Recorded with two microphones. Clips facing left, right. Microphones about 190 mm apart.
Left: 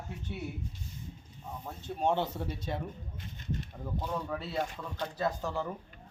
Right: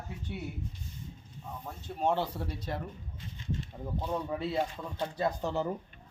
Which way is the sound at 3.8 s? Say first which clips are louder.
Right 3 dB; 15° right (ahead or behind).